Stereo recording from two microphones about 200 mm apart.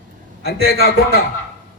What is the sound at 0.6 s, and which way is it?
Speech, 55° left (ahead or behind).